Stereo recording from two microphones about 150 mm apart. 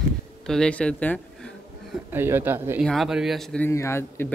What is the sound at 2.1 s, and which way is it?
Speech, 15° right (ahead or behind).